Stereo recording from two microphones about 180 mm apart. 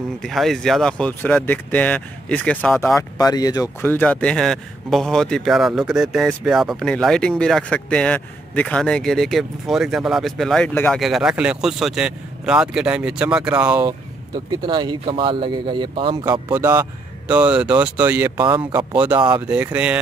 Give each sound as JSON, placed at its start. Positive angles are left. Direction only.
{"t": 0.2, "sound": "speech", "side_deg": 0}
{"t": 11.0, "sound": "speech", "side_deg": 0}
{"t": 13.7, "sound": "speech", "side_deg": -25}
{"t": 16.3, "sound": "speech", "side_deg": -15}
{"t": 19.3, "sound": "speech", "side_deg": -10}